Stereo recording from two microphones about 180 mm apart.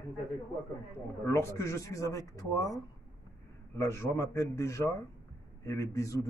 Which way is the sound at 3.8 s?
15° left (ahead or behind).